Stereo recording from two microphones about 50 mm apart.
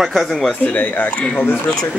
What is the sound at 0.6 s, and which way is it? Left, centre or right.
Speech, left.